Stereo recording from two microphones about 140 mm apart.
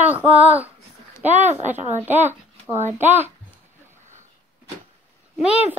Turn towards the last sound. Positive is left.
turn(degrees=-5)  # may be behind; listen again after turning